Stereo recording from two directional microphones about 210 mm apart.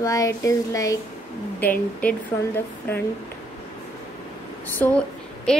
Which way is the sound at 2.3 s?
15° left (ahead or behind).